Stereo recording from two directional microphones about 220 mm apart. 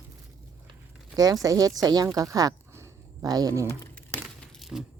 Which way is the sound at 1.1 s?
15° right (ahead or behind).